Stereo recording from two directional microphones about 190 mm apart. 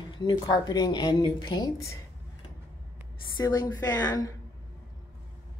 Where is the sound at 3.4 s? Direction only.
20° left (ahead or behind).